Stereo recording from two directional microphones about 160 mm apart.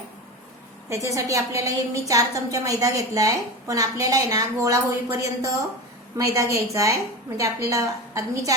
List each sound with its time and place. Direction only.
0.9 s a woman's voice: 20° right (ahead or behind)